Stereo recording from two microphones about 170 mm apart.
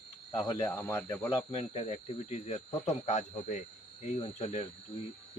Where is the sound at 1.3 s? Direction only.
35° left (ahead or behind).